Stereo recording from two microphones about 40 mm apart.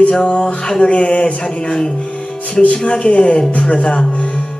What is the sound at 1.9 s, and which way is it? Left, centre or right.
Speech, left.